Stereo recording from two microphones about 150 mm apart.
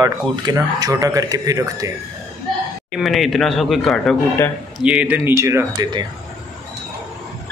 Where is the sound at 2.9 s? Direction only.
Centre (ahead or behind); by 5.8 s 20° right (ahead or behind).